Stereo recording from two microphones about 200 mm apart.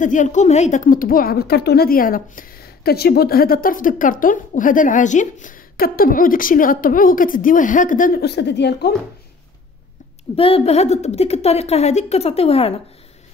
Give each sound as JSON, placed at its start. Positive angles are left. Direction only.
{"t": 0.0, "sound": "a woman's voice", "side_deg": 40}
{"t": 10.3, "sound": "a woman's voice", "side_deg": 30}